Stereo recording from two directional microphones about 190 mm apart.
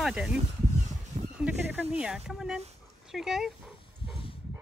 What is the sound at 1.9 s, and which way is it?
Speech, 5° right (ahead or behind).